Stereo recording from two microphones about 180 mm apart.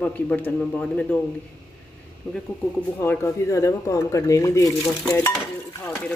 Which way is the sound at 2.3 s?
10° left (ahead or behind).